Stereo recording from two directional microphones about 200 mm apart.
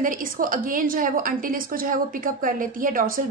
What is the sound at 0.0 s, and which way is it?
A woman's voice, 45° right (ahead or behind).